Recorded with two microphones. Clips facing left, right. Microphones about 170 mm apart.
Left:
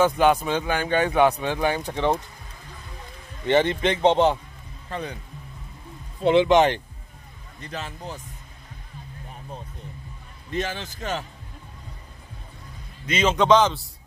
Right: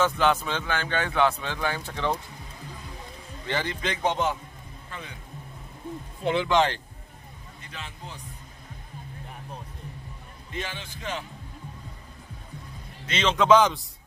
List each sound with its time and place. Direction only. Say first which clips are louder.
0.0 s speech: left 4 dB; 15° left (ahead or behind)
3.4 s a man's voice: left 10 dB; 25° left (ahead or behind)
4.8 s speech: left 10 dB; 40° left (ahead or behind)
6.2 s a man's voice: left 6 dB; 20° left (ahead or behind)
7.6 s speech: left 8 dB; 40° left (ahead or behind)
10.5 s a man's voice: left 7 dB; 40° left (ahead or behind)
13.0 s a man's voice: left 3 dB; 10° left (ahead or behind)
13.5 s a man's voice: right 1 dB; 10° right (ahead or behind)